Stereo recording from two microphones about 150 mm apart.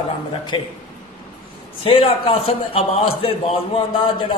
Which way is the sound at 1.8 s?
40° left (ahead or behind).